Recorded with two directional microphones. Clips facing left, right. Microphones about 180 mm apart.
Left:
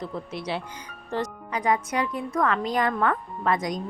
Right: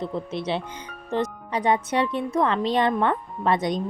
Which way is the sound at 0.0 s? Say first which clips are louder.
Right 4 dB; 25° right (ahead or behind).